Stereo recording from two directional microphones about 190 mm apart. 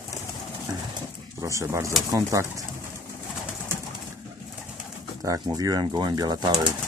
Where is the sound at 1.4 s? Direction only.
15° right (ahead or behind).